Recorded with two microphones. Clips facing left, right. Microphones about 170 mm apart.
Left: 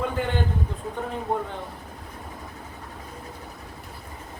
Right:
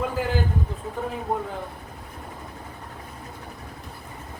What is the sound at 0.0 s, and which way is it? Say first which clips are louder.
Speech: right 1 dB; 5° right (ahead or behind).